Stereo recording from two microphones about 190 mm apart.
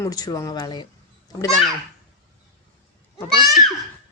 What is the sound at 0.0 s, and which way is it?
Speech, 20° left (ahead or behind).